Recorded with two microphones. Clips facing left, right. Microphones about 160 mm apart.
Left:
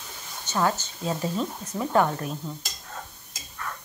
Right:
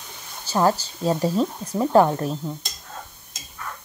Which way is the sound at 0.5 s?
35° right (ahead or behind).